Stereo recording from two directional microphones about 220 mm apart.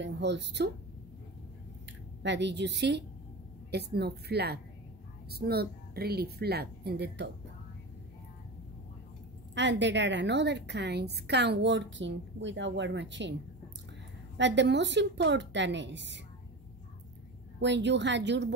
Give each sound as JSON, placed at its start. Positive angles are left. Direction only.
{"t": 0.0, "sound": "a woman's voice", "side_deg": -50}
{"t": 2.2, "sound": "a woman's voice", "side_deg": -55}
{"t": 9.6, "sound": "a woman's voice", "side_deg": -55}
{"t": 17.6, "sound": "a woman's voice", "side_deg": -55}